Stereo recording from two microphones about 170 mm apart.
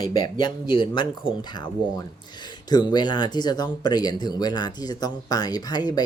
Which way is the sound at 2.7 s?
25° left (ahead or behind).